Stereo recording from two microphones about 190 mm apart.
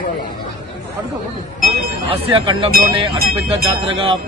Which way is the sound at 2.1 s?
25° right (ahead or behind).